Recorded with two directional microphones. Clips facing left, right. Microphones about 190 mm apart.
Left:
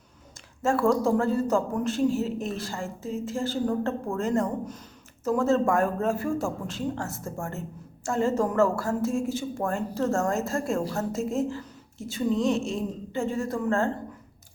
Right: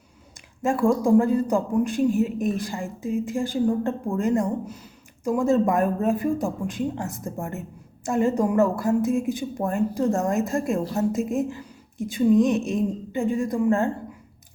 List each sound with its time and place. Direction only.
0.6 s a man's voice: 15° right (ahead or behind)